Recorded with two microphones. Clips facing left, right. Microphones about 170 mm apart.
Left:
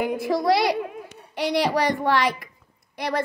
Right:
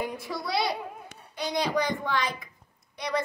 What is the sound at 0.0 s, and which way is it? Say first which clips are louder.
A child's voice: left 10 dB; 80° left.